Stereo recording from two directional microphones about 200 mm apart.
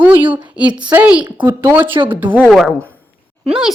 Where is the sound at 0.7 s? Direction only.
20° right (ahead or behind).